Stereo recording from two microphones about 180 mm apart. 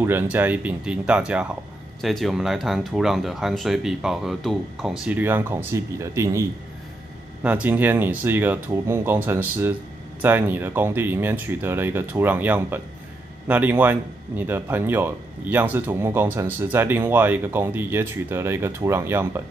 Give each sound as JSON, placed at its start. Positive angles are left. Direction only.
{"t": 0.0, "sound": "speech", "side_deg": -10}
{"t": 7.4, "sound": "speech", "side_deg": -10}